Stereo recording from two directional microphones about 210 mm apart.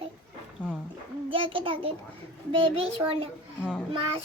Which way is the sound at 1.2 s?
25° right (ahead or behind).